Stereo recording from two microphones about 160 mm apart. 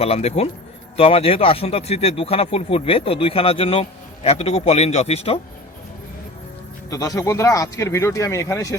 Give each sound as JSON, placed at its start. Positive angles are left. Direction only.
{"t": 0.0, "sound": "speech", "side_deg": 40}
{"t": 6.9, "sound": "speech", "side_deg": 20}